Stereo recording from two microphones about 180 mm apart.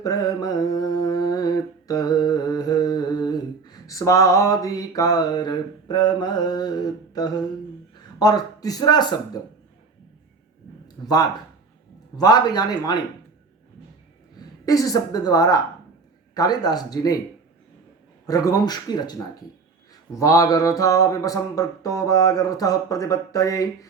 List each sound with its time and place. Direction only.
0.0 s mantra: 20° left (ahead or behind)
7.9 s a man's voice: 20° left (ahead or behind)
11.0 s mantra: 20° left (ahead or behind)
14.6 s mantra: 20° left (ahead or behind)
18.3 s mantra: 20° left (ahead or behind)